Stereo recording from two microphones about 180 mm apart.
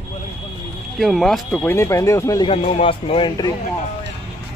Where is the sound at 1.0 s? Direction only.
Centre (ahead or behind); by 2.4 s 15° left (ahead or behind).